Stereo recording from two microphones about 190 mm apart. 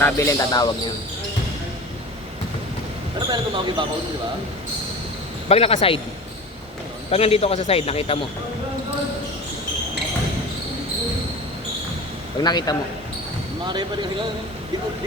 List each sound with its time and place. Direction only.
0.0 s speech: 15° left (ahead or behind)
3.2 s speech: 25° right (ahead or behind)
5.5 s a man's voice: 30° left (ahead or behind)
7.1 s a man's voice: 30° left (ahead or behind)
12.4 s a man's voice: 20° left (ahead or behind)